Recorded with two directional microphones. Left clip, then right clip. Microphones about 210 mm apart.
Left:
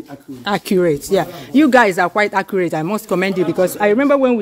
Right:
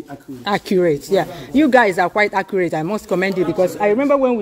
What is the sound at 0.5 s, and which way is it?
Speech, 10° left (ahead or behind).